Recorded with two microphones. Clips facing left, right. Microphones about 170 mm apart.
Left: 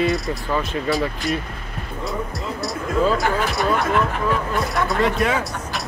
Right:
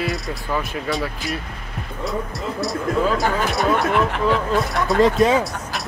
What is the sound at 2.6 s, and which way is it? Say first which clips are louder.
Speech: even; centre (ahead or behind).